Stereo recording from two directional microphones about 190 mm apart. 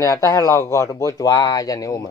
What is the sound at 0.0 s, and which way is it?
Speech, 15° left (ahead or behind).